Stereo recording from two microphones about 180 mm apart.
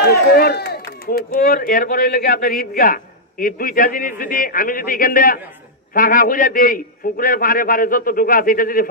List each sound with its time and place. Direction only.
0.0 s a man's voice: 55° left (ahead or behind)